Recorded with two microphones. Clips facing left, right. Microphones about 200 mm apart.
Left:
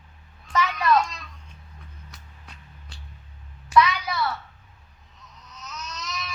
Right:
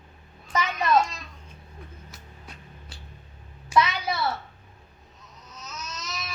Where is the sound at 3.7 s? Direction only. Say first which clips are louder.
Left 3 dB; 25° right (ahead or behind).